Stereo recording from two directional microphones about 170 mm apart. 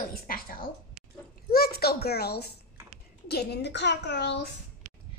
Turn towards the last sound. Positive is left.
turn(degrees=90)